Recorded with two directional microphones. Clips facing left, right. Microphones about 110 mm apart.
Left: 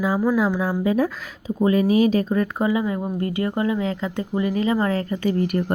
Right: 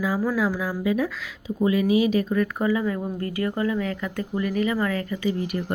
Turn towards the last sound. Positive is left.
turn(degrees=50)  # may be behind; listen again after turning